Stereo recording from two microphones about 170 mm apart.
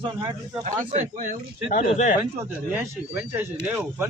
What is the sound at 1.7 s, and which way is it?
Speech, 50° left (ahead or behind).